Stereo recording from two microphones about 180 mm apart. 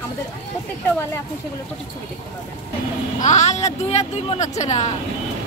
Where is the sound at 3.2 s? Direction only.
40° left (ahead or behind).